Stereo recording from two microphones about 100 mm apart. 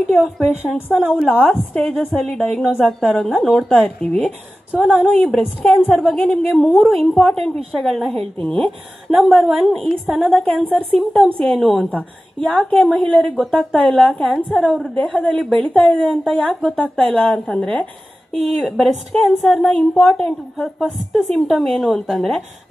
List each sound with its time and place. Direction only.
0.1 s a woman's voice: centre (ahead or behind)
1.5 s a woman's voice: 15° left (ahead or behind)
2.0 s a woman's voice: centre (ahead or behind)
4.0 s a woman's voice: 15° left (ahead or behind)
4.7 s a woman's voice: centre (ahead or behind)
9.1 s a woman's voice: centre (ahead or behind)
18.4 s a woman's voice: centre (ahead or behind)